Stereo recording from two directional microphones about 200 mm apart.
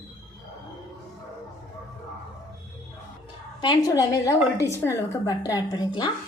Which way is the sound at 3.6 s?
20° left (ahead or behind).